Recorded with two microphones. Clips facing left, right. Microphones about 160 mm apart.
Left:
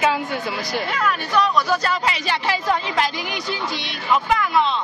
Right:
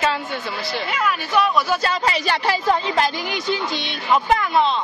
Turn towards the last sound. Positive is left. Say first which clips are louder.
# right 1 dB
turn(degrees=-35)  # may be behind; listen again after turning